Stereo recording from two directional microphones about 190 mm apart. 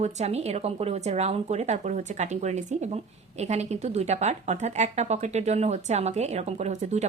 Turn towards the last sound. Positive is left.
turn(degrees=-35)  # may be behind; listen again after turning